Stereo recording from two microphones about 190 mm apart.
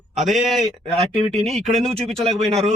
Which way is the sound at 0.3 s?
Centre (ahead or behind).